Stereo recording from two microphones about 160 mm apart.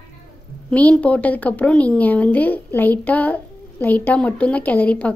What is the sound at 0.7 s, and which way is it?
A woman's voice, 10° left (ahead or behind).